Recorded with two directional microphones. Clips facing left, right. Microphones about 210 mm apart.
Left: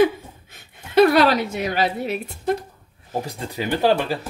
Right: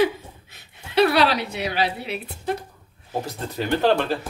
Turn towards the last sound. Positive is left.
turn(degrees=10)  # may be behind; listen again after turning